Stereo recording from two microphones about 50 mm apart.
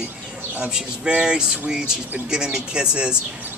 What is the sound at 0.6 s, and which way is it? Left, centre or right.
Speech, centre.